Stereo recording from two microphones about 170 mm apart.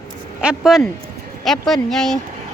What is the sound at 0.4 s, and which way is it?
Speech, 5° right (ahead or behind).